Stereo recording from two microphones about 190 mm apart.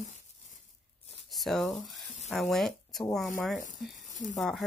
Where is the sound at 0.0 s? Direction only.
40° left (ahead or behind).